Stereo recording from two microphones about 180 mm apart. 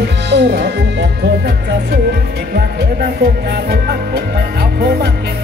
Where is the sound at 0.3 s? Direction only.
70° right (ahead or behind).